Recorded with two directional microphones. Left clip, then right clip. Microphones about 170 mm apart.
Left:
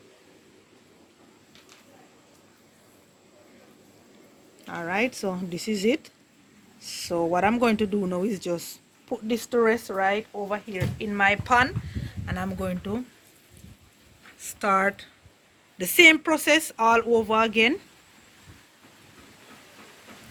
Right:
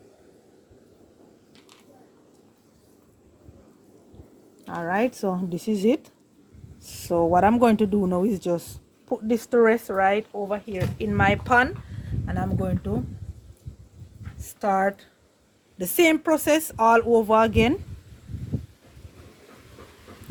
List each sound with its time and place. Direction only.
4.6 s a sound: 40° right (ahead or behind)
4.9 s speech: 55° right (ahead or behind)
6.7 s a sound: 60° right (ahead or behind)
7.3 s speech: 55° right (ahead or behind); by 10.5 s 35° right (ahead or behind)
10.9 s speech: 70° right (ahead or behind)
12.2 s speech: 45° right (ahead or behind)
14.4 s speech: 40° right (ahead or behind); by 17.7 s 60° right (ahead or behind)